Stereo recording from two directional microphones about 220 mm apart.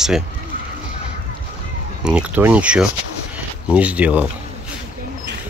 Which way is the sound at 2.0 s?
5° right (ahead or behind).